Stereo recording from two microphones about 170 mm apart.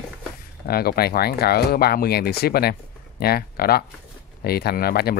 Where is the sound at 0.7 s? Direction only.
65° left (ahead or behind).